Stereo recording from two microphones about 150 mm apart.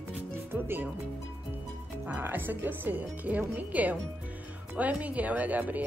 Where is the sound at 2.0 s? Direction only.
10° right (ahead or behind).